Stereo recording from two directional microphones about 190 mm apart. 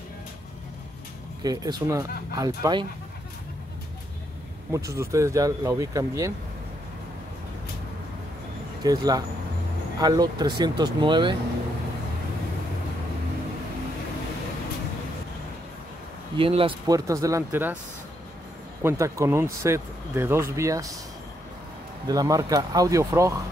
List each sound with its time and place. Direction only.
1.4 s speech: 20° right (ahead or behind)
4.7 s speech: 15° right (ahead or behind)
8.8 s speech: 20° right (ahead or behind)
16.3 s speech: 30° right (ahead or behind); by 17.7 s 10° right (ahead or behind)
18.8 s speech: 15° right (ahead or behind)
22.0 s speech: 20° right (ahead or behind)